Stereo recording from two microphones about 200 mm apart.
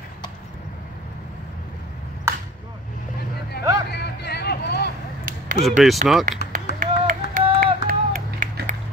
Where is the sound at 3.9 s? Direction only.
55° left (ahead or behind).